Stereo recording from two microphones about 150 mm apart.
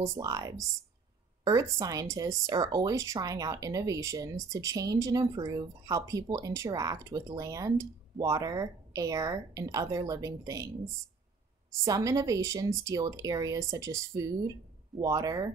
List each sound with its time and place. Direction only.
0.0 s speech: 25° right (ahead or behind)
11.8 s speech: 20° right (ahead or behind)